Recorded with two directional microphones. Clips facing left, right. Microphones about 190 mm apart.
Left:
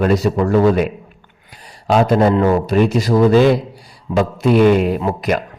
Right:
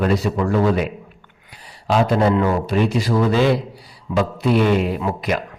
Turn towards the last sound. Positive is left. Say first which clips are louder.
# left 4 dB
turn(degrees=45)  # may be behind; listen again after turning